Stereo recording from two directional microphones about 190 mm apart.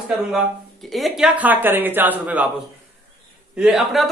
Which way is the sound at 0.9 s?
Centre (ahead or behind).